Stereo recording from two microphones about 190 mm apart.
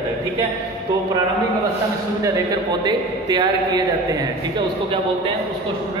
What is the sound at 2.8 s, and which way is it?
A man's voice, 20° right (ahead or behind).